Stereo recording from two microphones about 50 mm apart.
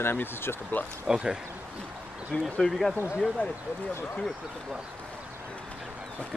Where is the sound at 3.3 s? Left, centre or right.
Right.